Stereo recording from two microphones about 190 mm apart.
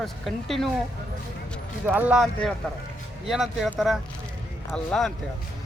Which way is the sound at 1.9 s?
10° right (ahead or behind).